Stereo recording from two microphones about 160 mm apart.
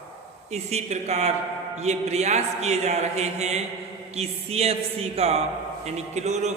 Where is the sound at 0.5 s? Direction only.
45° right (ahead or behind).